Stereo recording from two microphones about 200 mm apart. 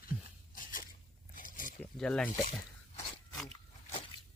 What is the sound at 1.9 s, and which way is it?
Speech, 5° left (ahead or behind).